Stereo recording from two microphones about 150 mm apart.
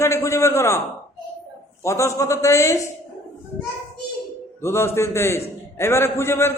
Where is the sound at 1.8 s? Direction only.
20° left (ahead or behind).